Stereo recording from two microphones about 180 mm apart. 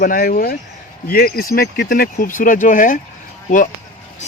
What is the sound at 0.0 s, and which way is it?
Speech, 55° left (ahead or behind).